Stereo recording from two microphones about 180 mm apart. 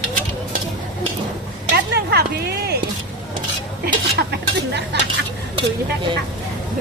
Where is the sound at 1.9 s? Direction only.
65° right (ahead or behind).